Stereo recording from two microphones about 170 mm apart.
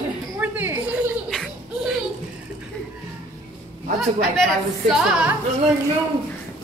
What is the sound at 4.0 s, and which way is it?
Speech, centre (ahead or behind).